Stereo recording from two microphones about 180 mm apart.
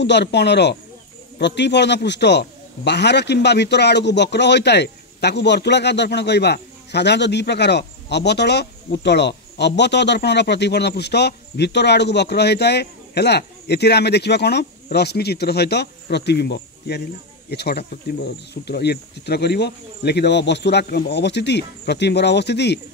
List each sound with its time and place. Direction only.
0.0 s a man's voice: 70° left (ahead or behind)